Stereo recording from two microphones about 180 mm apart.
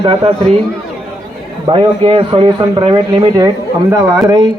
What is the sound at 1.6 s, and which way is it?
A man's voice, 25° right (ahead or behind).